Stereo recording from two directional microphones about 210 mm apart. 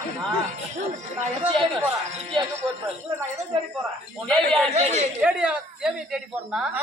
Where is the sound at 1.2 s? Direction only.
25° right (ahead or behind).